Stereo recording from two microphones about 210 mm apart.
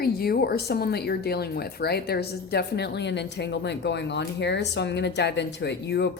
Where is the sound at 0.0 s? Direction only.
45° left (ahead or behind).